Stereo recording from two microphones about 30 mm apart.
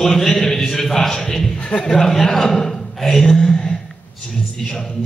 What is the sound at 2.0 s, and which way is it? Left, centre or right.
A man's voice, centre.